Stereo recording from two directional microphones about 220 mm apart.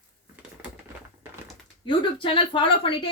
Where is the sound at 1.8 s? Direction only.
25° left (ahead or behind).